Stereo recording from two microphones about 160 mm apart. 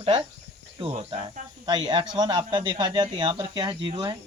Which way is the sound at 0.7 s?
35° right (ahead or behind).